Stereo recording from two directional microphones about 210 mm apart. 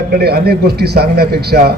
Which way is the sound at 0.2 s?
50° right (ahead or behind).